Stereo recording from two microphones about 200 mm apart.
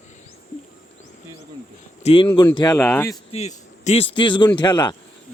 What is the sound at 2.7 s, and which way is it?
Speech, 10° left (ahead or behind).